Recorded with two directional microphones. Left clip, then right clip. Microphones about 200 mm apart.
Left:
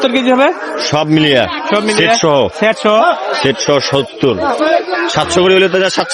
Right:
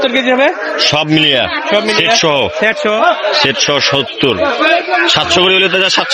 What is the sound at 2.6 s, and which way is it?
Speech, 60° left (ahead or behind).